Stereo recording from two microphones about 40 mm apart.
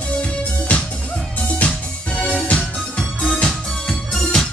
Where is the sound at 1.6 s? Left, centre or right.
Left.